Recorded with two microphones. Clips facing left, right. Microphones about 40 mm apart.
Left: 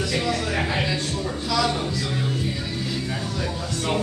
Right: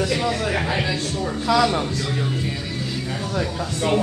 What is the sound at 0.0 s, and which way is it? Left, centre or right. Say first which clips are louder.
Music: right 3 dB; centre.